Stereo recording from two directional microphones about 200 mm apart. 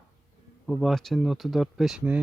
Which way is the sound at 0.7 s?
Centre (ahead or behind).